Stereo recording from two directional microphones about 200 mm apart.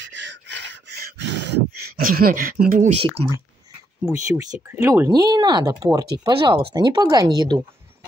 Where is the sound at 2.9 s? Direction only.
30° right (ahead or behind).